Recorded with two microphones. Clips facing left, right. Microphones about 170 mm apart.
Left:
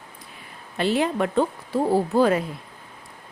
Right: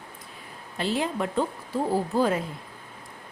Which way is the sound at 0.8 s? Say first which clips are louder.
Left 5 dB; 70° left (ahead or behind).